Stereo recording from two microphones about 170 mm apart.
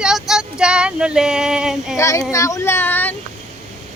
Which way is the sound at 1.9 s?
15° left (ahead or behind).